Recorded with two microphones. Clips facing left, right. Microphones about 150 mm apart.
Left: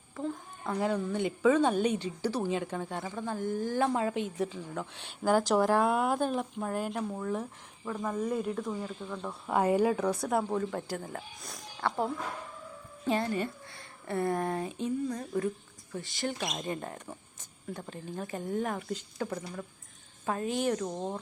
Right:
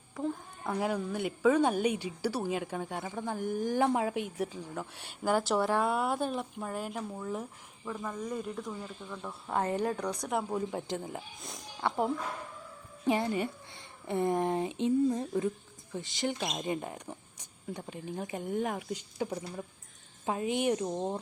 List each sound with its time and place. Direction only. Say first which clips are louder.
0.2 s a woman's voice: right 1 dB; 10° right (ahead or behind)
5.3 s speech: left 3 dB; 40° left (ahead or behind)
5.6 s speech: left 3 dB; centre (ahead or behind)
7.9 s speech: left 6 dB; 20° left (ahead or behind)
8.2 s speech: left 5 dB; 5° left (ahead or behind)
10.8 s a woman's voice: right 1 dB; 20° right (ahead or behind)